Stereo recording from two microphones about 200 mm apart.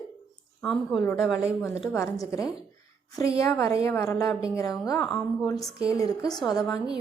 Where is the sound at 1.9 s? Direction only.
15° left (ahead or behind).